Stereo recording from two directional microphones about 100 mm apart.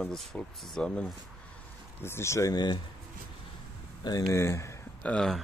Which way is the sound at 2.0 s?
25° left (ahead or behind).